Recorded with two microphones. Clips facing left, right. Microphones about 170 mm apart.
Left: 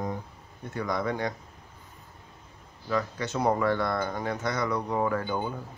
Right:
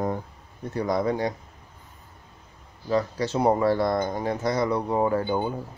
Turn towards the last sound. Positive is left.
turn(degrees=-25)  # may be behind; listen again after turning